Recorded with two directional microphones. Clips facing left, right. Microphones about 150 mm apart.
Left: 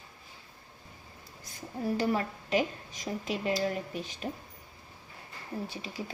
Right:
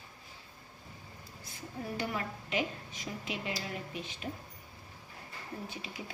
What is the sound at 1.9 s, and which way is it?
A woman's voice, 40° left (ahead or behind).